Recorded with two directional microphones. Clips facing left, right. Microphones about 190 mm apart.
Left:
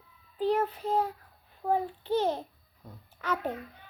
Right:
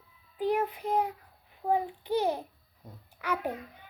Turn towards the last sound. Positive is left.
turn(degrees=-10)  # may be behind; listen again after turning